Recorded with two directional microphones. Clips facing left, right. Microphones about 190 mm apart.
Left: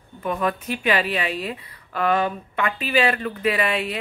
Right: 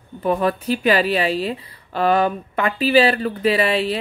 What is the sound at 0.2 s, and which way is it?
Speech, 35° right (ahead or behind).